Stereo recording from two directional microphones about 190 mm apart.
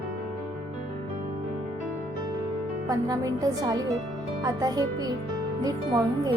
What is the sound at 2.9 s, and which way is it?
Speech, 20° right (ahead or behind).